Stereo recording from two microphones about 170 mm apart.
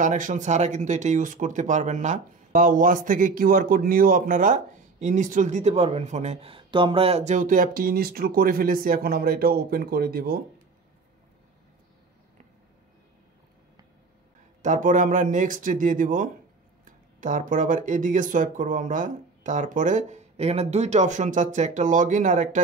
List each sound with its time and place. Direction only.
0.0 s speech: 50° right (ahead or behind)
14.6 s speech: 50° right (ahead or behind)